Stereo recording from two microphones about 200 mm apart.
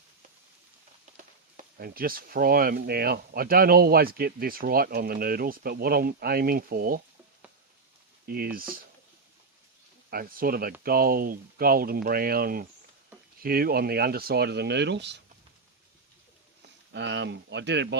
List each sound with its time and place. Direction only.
1.1 s speech: 45° right (ahead or behind)
8.3 s speech: 50° right (ahead or behind)
10.1 s speech: 45° right (ahead or behind)
16.9 s speech: 60° right (ahead or behind)